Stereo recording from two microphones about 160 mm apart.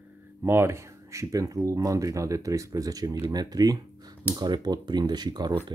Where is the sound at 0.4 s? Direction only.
15° right (ahead or behind).